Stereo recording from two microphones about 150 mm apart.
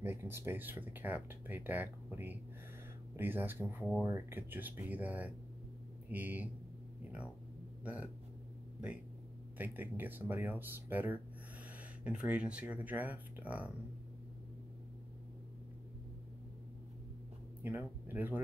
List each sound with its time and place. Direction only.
0.0 s speech: 15° right (ahead or behind)
7.8 s speech: 10° right (ahead or behind)
9.6 s speech: 10° right (ahead or behind)
17.6 s speech: 15° right (ahead or behind)